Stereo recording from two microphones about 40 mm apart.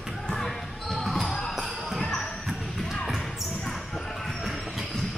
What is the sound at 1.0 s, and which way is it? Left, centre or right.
Music, centre.